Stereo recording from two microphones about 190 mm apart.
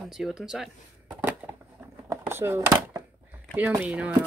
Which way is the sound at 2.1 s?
10° right (ahead or behind).